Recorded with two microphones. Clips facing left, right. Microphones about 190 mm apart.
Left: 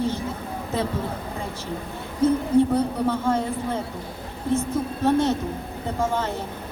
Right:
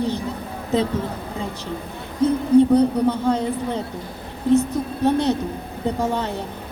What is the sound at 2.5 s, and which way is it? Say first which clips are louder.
A woman's voice: right 5 dB; 15° right (ahead or behind).